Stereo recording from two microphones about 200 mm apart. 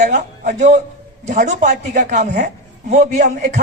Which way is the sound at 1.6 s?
55° right (ahead or behind).